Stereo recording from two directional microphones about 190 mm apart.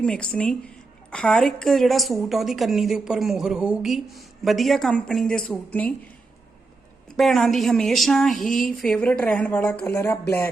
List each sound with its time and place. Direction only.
0.0 s a woman's voice: 5° left (ahead or behind)
7.1 s a woman's voice: centre (ahead or behind)